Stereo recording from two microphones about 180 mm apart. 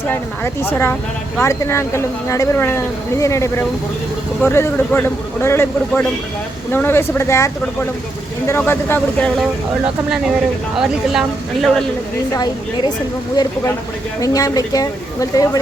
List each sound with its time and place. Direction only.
0.1 s speech: 10° left (ahead or behind)
10.8 s a woman's voice: centre (ahead or behind)
12.3 s speech: 20° left (ahead or behind)